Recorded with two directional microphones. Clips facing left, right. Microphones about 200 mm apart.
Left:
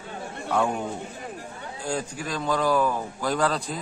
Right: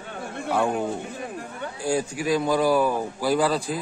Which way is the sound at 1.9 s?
10° right (ahead or behind).